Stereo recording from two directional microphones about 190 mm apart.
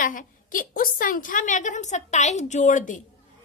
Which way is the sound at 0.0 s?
45° left (ahead or behind).